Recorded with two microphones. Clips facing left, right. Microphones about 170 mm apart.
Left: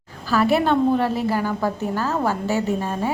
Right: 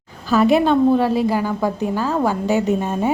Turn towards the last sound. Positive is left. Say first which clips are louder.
# right 4 dB
turn(degrees=-20)  # may be behind; listen again after turning